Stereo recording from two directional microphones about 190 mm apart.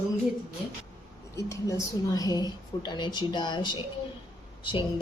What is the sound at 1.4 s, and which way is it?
A woman's voice, 15° left (ahead or behind).